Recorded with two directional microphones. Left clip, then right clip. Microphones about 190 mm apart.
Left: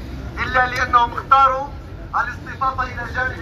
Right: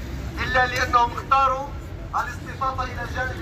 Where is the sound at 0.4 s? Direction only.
40° right (ahead or behind).